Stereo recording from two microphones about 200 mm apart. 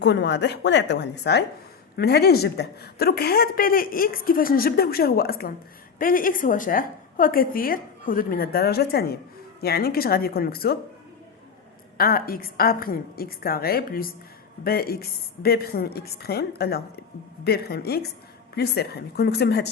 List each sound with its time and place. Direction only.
0.0 s a woman's voice: 60° left (ahead or behind)
11.9 s a woman's voice: 50° left (ahead or behind)